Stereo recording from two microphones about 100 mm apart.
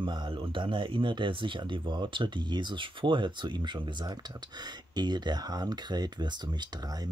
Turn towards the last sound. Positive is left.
turn(degrees=-45)  # may be behind; listen again after turning